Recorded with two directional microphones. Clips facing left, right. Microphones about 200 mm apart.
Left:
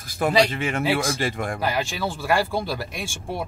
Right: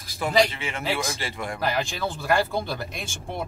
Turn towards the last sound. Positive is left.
turn(degrees=5)  # may be behind; listen again after turning